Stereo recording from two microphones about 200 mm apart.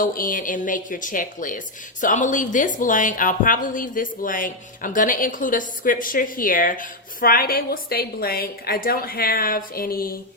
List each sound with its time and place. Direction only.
0.0 s a woman's voice: 45° left (ahead or behind)